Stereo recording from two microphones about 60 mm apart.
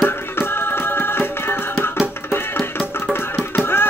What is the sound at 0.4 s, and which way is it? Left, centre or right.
Music, left.